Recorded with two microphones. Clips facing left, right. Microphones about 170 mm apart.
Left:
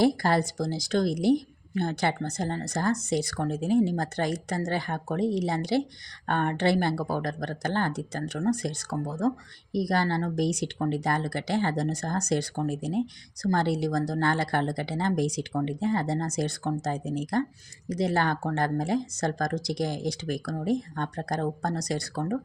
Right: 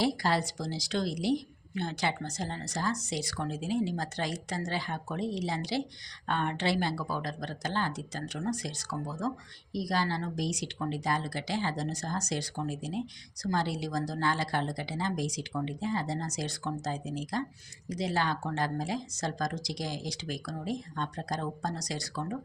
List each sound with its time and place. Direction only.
0.0 s a woman's voice: 50° left (ahead or behind)